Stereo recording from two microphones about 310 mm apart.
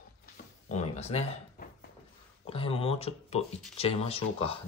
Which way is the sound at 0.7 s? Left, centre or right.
Left.